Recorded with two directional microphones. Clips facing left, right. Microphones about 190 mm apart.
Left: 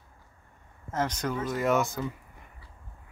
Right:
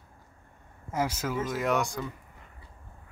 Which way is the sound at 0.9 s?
5° right (ahead or behind).